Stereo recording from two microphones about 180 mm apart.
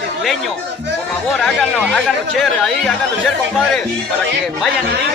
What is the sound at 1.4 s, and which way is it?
Speech, 5° left (ahead or behind).